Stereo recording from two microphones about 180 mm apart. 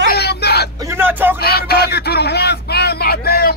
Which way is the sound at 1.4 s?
60° left (ahead or behind).